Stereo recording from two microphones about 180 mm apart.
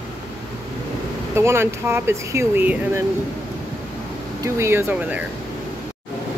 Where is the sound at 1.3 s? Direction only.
15° right (ahead or behind).